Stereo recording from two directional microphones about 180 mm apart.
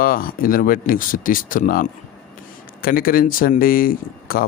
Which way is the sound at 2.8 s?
55° left (ahead or behind).